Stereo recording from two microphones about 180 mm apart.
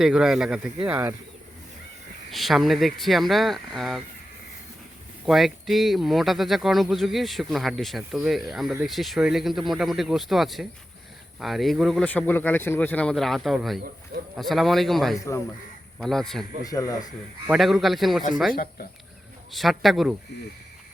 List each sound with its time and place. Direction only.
0.0 s speech: 5° right (ahead or behind)
2.3 s speech: centre (ahead or behind)
5.2 s speech: centre (ahead or behind)
16.6 s speech: 20° left (ahead or behind)
17.4 s speech: 5° right (ahead or behind)
18.5 s speech: 55° left (ahead or behind)
19.5 s speech: centre (ahead or behind)